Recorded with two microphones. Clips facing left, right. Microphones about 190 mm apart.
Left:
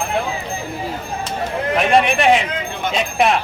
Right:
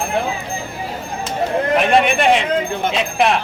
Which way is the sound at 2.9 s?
Centre (ahead or behind).